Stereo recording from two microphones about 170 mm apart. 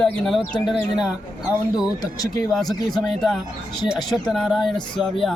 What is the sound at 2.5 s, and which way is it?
Speech, centre (ahead or behind).